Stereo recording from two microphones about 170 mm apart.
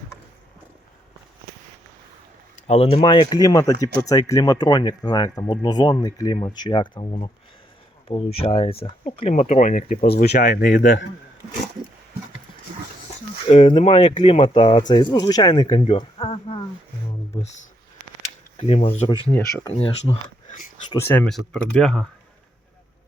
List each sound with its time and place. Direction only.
2.6 s speech: 35° left (ahead or behind)
9.3 s speech: 45° left (ahead or behind)
10.1 s speech: 70° left (ahead or behind)
10.3 s speech: 55° left (ahead or behind)
13.5 s speech: 35° left (ahead or behind)
16.0 s a sound: 35° left (ahead or behind)
17.3 s speech: 20° left (ahead or behind)
18.5 s speech: 40° left (ahead or behind)
19.3 s speech: 15° left (ahead or behind)
19.7 s speech: 35° left (ahead or behind)
20.9 s speech: 10° left (ahead or behind)